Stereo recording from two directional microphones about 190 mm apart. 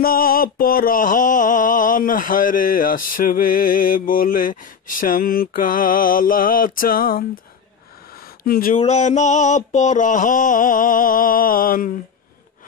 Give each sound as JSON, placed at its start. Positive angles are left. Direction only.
{"t": 0.0, "sound": "mantra", "side_deg": 50}
{"t": 8.5, "sound": "mantra", "side_deg": 50}
{"t": 8.7, "sound": "male singing", "side_deg": 35}
{"t": 9.7, "sound": "mantra", "side_deg": 40}